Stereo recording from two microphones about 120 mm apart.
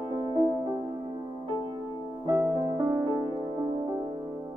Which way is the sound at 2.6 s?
35° right (ahead or behind).